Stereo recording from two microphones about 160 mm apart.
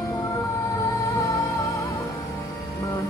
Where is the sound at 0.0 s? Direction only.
20° left (ahead or behind).